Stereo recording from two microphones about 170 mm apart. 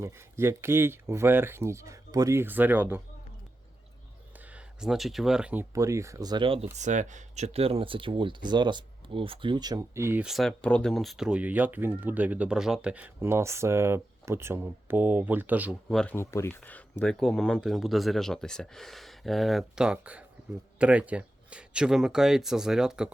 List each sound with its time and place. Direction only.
0.0 s speech: 15° right (ahead or behind)
4.5 s speech: 5° right (ahead or behind)
5.7 s speech: 20° right (ahead or behind)
6.7 s speech: 45° right (ahead or behind); by 10.2 s 15° right (ahead or behind)
10.2 s speech: centre (ahead or behind)
16.0 s speech: 10° left (ahead or behind); by 23.1 s 5° right (ahead or behind)